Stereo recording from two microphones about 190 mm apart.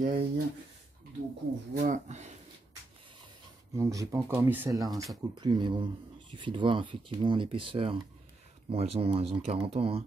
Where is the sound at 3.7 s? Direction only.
15° right (ahead or behind).